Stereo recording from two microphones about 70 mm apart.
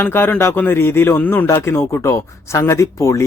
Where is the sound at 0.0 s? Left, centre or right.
Left.